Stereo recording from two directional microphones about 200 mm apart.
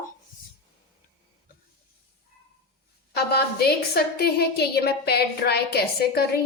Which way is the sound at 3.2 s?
55° left (ahead or behind).